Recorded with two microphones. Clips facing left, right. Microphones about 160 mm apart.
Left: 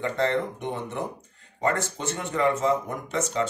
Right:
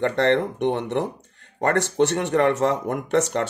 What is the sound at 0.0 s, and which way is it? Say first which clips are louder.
Speech: right 5 dB; 70° right (ahead or behind).